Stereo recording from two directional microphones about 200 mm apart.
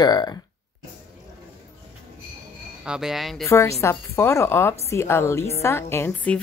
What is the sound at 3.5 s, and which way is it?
A woman's voice, 15° left (ahead or behind).